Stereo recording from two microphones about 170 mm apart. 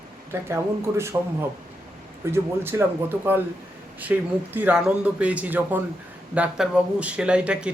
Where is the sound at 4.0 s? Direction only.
10° right (ahead or behind).